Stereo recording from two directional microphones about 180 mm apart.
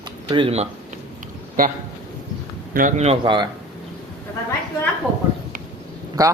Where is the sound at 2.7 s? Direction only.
40° right (ahead or behind).